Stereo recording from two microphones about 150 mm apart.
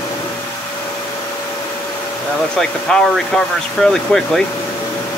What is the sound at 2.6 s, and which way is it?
Speech, 5° left (ahead or behind).